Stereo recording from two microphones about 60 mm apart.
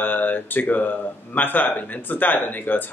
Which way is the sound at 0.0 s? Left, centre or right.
Left.